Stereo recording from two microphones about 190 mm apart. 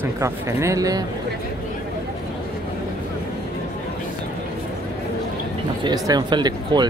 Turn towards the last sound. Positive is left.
turn(degrees=-20)  # may be behind; listen again after turning